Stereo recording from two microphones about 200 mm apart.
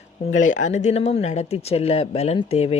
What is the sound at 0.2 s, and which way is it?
Speech, 40° left (ahead or behind).